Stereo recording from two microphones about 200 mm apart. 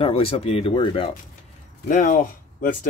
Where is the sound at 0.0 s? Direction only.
25° left (ahead or behind).